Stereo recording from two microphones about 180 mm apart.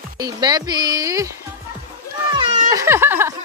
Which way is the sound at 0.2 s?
20° right (ahead or behind).